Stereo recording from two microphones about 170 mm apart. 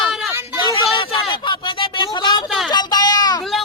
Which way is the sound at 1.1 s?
30° left (ahead or behind).